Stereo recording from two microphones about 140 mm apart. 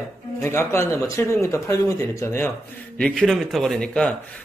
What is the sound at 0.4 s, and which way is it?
Speech, 20° left (ahead or behind).